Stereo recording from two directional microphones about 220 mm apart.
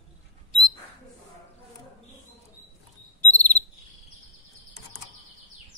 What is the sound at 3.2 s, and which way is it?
Cricket, 5° left (ahead or behind).